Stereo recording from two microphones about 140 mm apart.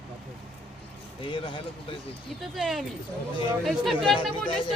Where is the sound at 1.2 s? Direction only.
35° left (ahead or behind).